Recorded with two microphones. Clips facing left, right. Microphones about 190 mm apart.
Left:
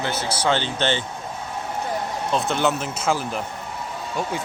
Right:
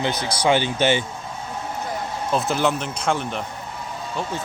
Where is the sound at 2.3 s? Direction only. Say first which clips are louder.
Right 1 dB; centre (ahead or behind).